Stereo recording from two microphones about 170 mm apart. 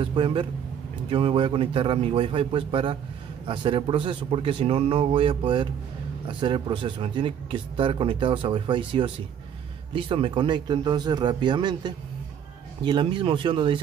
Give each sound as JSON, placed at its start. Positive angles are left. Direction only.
{"t": 0.0, "sound": "a man's voice", "side_deg": -30}